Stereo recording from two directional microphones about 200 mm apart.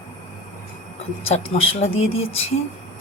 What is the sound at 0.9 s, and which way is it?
Speech, 30° left (ahead or behind).